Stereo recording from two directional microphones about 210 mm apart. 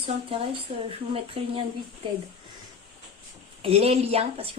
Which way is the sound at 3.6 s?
30° right (ahead or behind).